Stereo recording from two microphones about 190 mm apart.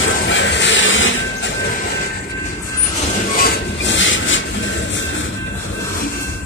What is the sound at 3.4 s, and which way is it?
Train, 65° left (ahead or behind).